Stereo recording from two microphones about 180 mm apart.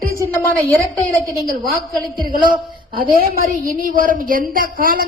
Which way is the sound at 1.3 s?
55° right (ahead or behind).